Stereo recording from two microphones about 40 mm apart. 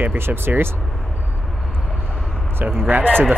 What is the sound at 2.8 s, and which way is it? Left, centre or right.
Speech, right.